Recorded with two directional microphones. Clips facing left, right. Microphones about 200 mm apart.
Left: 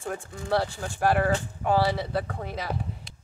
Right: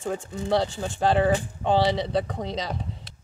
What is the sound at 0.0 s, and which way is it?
Speech, 20° right (ahead or behind).